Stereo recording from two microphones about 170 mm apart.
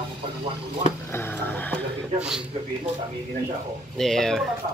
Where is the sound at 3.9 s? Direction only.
Centre (ahead or behind).